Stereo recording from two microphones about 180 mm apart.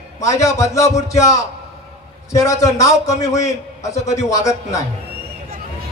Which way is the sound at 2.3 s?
20° left (ahead or behind).